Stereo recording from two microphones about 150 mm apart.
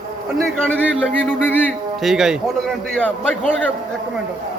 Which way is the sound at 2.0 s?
5° right (ahead or behind).